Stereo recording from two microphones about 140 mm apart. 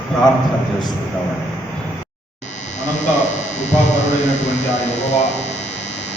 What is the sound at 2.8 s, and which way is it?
A man's voice, 55° left (ahead or behind).